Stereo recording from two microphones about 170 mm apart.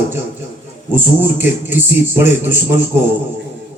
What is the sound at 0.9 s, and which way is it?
A man's voice, 10° right (ahead or behind).